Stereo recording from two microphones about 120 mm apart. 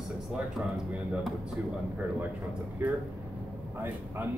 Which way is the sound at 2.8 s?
15° right (ahead or behind).